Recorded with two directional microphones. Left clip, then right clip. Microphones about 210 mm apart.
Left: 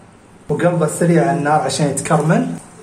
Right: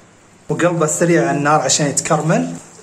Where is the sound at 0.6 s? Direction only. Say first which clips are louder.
Right 1 dB; 25° right (ahead or behind).